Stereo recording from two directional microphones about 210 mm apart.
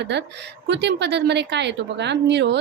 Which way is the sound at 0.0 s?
55° right (ahead or behind).